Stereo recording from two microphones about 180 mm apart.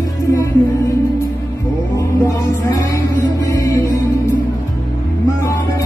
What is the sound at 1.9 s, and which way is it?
Music, 20° left (ahead or behind).